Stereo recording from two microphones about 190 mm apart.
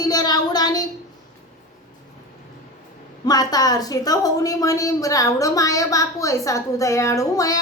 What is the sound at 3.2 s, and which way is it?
A woman's voice, 20° left (ahead or behind).